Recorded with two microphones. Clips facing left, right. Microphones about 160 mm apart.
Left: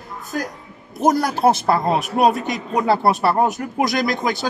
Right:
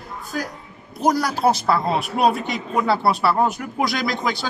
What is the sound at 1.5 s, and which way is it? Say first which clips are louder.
A man's voice: left 2 dB; 50° left (ahead or behind).